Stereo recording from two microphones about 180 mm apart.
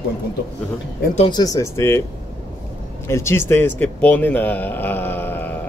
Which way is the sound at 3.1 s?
15° left (ahead or behind).